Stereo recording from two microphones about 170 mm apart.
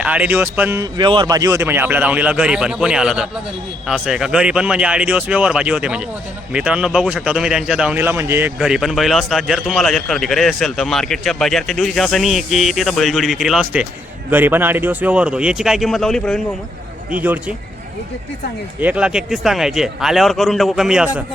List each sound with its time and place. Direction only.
0.0 s a man's voice: 10° right (ahead or behind)
0.9 s a man's voice: 25° right (ahead or behind); by 16.4 s 5° left (ahead or behind)
17.1 s a man's voice: 10° right (ahead or behind)
18.8 s speech: 10° right (ahead or behind)